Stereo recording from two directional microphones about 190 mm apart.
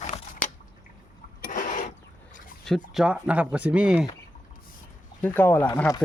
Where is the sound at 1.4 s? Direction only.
45° left (ahead or behind).